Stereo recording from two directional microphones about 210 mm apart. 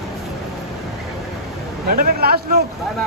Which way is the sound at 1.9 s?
40° right (ahead or behind).